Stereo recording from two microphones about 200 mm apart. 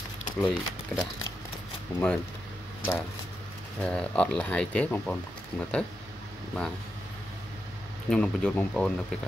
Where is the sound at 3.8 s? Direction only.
5° left (ahead or behind).